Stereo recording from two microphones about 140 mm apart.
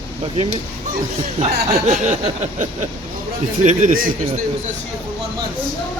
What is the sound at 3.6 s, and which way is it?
Speech, 70° right (ahead or behind).